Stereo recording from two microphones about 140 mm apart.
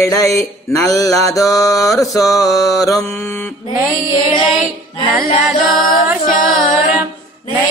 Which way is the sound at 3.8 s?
20° right (ahead or behind).